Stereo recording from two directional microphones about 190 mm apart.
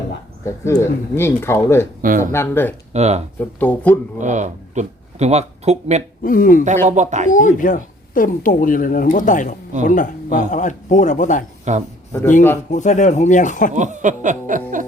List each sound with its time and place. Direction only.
0.4 s speech: 15° left (ahead or behind)
2.0 s speech: 45° right (ahead or behind)
2.3 s speech: 10° left (ahead or behind)
2.9 s snicker: 35° right (ahead or behind)
3.6 s speech: 10° left (ahead or behind)
4.2 s speech: 40° right (ahead or behind)
6.2 s speech: 45° left (ahead or behind)
6.8 s snicker: 40° right (ahead or behind)
7.3 s speech: 45° left (ahead or behind)
11.7 s snicker: 40° right (ahead or behind)
12.7 s speech: 40° left (ahead or behind)
13.7 s snicker: 40° right (ahead or behind)